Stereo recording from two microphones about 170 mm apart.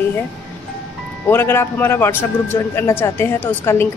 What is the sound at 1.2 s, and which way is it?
Speech, 15° left (ahead or behind).